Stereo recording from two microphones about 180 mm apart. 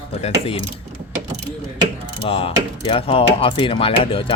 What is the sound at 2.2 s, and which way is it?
Speech, 30° left (ahead or behind).